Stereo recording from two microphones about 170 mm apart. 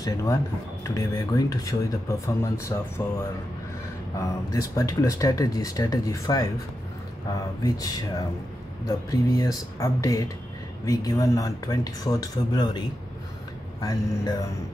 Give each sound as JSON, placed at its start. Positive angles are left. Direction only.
{"t": 0.0, "sound": "speech", "side_deg": 20}
{"t": 4.2, "sound": "speech", "side_deg": 20}